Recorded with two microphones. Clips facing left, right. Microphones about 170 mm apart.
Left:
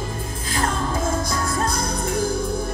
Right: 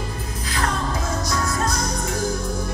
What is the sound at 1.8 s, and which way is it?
Music, 30° left (ahead or behind).